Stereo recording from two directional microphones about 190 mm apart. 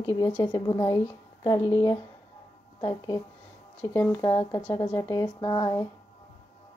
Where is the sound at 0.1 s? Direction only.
15° left (ahead or behind).